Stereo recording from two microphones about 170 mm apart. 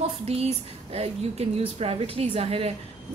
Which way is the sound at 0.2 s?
35° right (ahead or behind).